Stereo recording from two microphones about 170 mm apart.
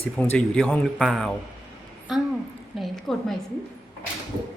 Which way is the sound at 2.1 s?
Centre (ahead or behind).